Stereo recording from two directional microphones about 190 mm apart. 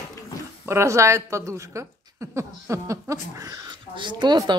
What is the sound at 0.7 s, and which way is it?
A woman's voice, 15° right (ahead or behind).